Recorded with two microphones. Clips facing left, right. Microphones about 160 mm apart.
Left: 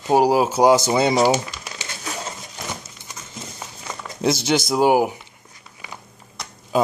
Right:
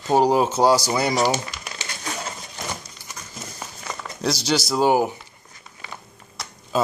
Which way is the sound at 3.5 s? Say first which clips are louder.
Right 2 dB; 10° left (ahead or behind).